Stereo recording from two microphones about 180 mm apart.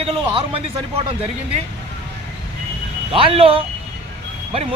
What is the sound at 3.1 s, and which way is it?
Speech, 30° right (ahead or behind).